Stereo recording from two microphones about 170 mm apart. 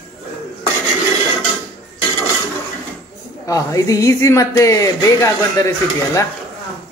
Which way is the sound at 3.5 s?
20° left (ahead or behind).